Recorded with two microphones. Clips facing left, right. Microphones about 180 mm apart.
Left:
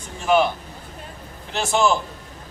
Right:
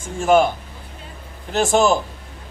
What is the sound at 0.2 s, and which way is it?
Speech, 45° right (ahead or behind).